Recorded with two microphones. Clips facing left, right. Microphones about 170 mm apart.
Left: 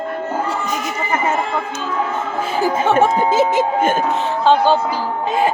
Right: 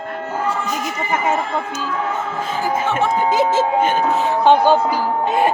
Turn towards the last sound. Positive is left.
turn(degrees=-15)  # may be behind; listen again after turning